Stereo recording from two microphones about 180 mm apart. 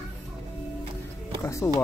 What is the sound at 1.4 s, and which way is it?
Music, 15° left (ahead or behind).